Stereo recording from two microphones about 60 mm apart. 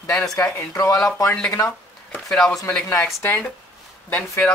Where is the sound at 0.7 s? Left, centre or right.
Left.